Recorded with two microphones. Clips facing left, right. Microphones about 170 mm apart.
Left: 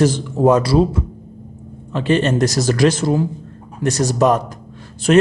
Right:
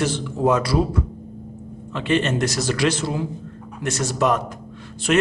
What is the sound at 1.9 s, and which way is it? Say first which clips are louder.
A man's voice: left 4 dB; 35° left (ahead or behind).